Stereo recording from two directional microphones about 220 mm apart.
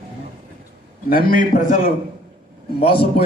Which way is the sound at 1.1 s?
40° left (ahead or behind).